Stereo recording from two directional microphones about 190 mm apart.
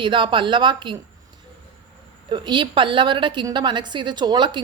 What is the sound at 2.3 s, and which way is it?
A woman's voice, 25° right (ahead or behind).